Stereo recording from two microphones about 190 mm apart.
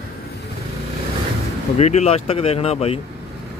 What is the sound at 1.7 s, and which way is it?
Speech, 35° left (ahead or behind).